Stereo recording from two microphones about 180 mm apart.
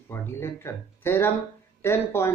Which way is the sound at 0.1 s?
15° left (ahead or behind).